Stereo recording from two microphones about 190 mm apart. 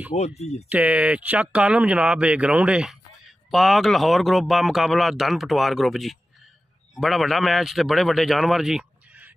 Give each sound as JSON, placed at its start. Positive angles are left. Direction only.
{"t": 0.1, "sound": "speech", "side_deg": 35}
{"t": 0.7, "sound": "speech", "side_deg": -5}